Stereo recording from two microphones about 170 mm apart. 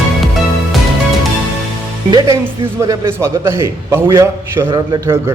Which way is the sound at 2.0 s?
25° right (ahead or behind).